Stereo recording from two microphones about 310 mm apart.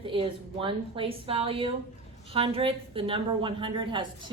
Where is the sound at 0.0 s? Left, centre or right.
Centre.